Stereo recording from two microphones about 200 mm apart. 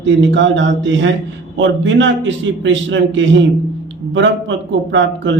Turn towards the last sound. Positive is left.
turn(degrees=-70)  # may be behind; listen again after turning